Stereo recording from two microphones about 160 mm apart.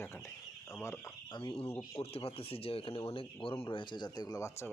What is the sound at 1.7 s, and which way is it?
Speech, 20° left (ahead or behind).